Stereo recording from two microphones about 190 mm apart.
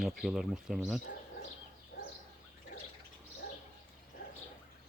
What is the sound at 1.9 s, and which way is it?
Turkey, 55° left (ahead or behind).